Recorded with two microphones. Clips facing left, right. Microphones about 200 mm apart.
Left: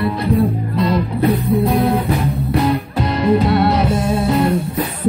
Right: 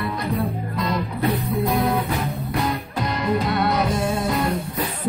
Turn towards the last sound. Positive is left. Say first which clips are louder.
# left 7 dB
turn(degrees=30)  # may be behind; listen again after turning